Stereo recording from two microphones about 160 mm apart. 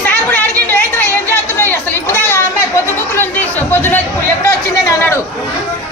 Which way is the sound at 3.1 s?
10° left (ahead or behind).